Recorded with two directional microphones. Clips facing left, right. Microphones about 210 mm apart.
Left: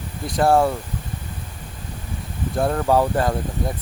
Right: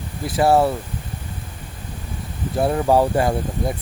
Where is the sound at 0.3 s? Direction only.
5° right (ahead or behind).